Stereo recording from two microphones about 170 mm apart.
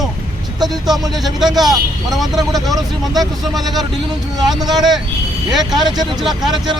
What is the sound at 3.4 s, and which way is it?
Speech, centre (ahead or behind).